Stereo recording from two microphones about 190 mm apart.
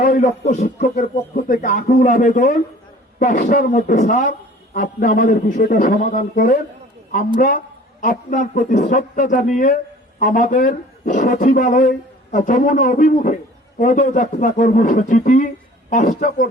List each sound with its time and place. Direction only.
0.0 s a man's voice: 45° left (ahead or behind)